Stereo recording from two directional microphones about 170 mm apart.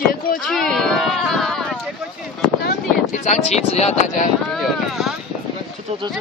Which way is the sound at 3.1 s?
45° left (ahead or behind).